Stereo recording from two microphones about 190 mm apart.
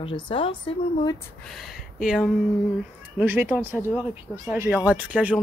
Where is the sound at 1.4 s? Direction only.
Centre (ahead or behind).